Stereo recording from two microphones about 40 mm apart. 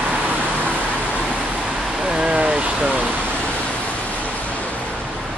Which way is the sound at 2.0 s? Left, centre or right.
Right.